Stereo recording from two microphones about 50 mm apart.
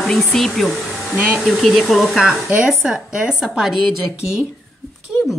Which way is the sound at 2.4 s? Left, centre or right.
Right.